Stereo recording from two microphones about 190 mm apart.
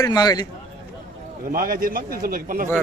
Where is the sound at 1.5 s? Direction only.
50° right (ahead or behind).